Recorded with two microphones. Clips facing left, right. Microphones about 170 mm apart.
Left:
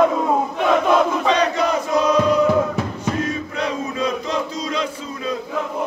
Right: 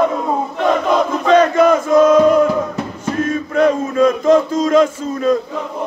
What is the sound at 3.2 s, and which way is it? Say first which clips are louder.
Chant: right 9 dB; 50° right (ahead or behind).